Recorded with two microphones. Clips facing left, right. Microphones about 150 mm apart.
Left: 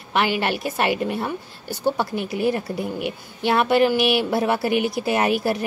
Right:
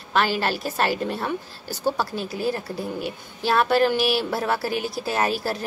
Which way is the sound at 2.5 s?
20° left (ahead or behind).